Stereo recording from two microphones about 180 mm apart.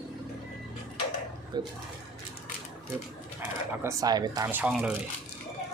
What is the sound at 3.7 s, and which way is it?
Speech, 20° right (ahead or behind).